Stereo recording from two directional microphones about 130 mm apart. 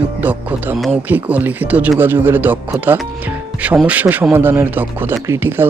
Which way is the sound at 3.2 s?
10° right (ahead or behind).